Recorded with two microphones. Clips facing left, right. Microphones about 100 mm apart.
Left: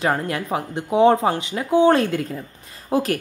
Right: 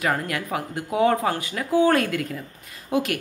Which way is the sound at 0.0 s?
30° left (ahead or behind).